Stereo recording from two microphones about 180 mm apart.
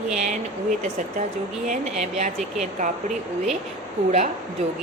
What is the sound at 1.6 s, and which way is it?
Speech, 40° right (ahead or behind).